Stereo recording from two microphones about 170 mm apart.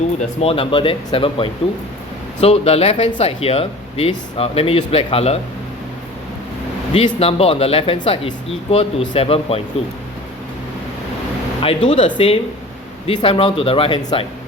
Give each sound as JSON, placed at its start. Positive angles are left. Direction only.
{"t": 0.2, "sound": "speech", "side_deg": 35}
{"t": 6.9, "sound": "speech", "side_deg": 35}
{"t": 11.6, "sound": "speech", "side_deg": 35}